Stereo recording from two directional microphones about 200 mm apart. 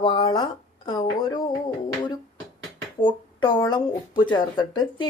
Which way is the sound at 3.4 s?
20° left (ahead or behind).